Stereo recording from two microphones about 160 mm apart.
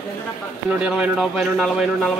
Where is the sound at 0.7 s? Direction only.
5° right (ahead or behind).